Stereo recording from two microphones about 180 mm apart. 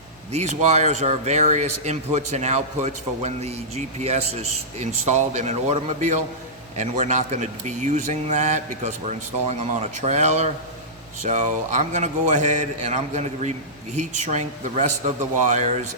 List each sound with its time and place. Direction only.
0.3 s speech: 40° right (ahead or behind)